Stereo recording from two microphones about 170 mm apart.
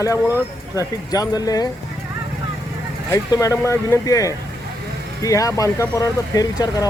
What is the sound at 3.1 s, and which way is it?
Speech, 20° left (ahead or behind).